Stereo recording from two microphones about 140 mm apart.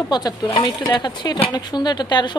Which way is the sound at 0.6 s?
25° left (ahead or behind).